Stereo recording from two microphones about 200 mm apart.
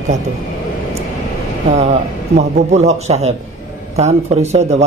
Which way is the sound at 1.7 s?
35° right (ahead or behind).